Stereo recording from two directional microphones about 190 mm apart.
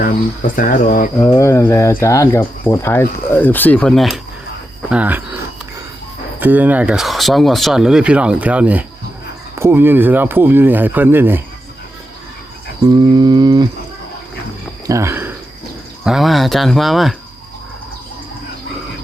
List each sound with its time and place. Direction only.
0.0 s speech: 45° left (ahead or behind)
1.2 s speech: 15° left (ahead or behind); by 5.4 s 10° right (ahead or behind)
6.4 s speech: 10° right (ahead or behind)
12.8 s a sound: 20° right (ahead or behind)
14.8 s a sound: 15° right (ahead or behind)
16.0 s speech: centre (ahead or behind)